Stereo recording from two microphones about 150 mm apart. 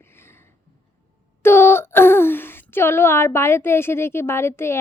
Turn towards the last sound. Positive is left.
turn(degrees=15)  # may be behind; listen again after turning